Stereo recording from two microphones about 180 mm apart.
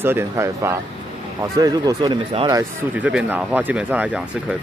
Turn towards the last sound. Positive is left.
turn(degrees=-10)  # may be behind; listen again after turning